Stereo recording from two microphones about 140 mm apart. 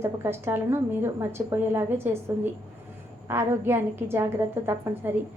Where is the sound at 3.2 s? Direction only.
15° right (ahead or behind).